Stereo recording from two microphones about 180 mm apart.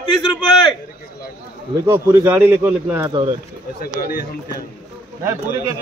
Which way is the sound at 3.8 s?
55° left (ahead or behind).